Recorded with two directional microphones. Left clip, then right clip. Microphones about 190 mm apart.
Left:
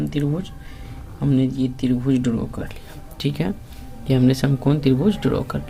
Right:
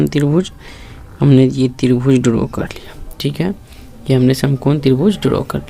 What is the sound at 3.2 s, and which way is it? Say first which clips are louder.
Speech: right 5 dB; 20° right (ahead or behind).